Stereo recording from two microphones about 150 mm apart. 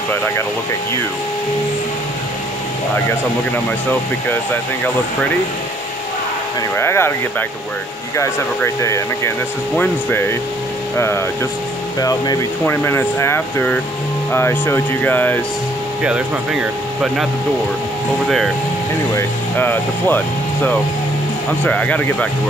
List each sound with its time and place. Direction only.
3.5 s speech: 15° left (ahead or behind)
6.8 s speech: 15° left (ahead or behind)
8.8 s speech: 20° left (ahead or behind)
19.1 s speech: 15° left (ahead or behind)